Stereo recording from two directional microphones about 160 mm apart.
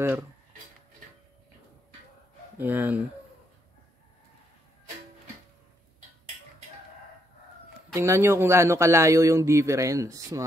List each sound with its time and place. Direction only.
2.5 s speech: 10° right (ahead or behind)
7.9 s speech: 20° right (ahead or behind)